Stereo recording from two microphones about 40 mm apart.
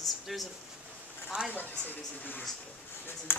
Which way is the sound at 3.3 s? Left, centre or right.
Left.